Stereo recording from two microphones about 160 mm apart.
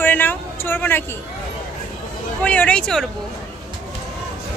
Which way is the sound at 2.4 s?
10° left (ahead or behind).